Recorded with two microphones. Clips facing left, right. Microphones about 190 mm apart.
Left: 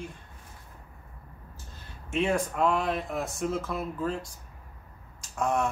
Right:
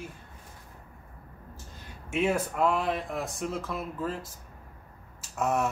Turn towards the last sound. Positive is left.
turn(degrees=-5)  # may be behind; listen again after turning